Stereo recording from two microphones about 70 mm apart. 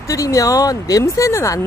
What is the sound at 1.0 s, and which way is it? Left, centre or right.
Speech, left.